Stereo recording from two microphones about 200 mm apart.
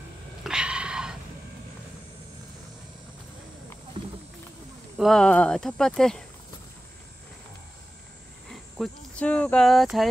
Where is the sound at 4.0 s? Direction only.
25° right (ahead or behind).